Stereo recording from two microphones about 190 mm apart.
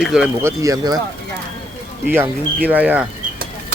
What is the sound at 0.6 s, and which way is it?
Speech, 20° right (ahead or behind).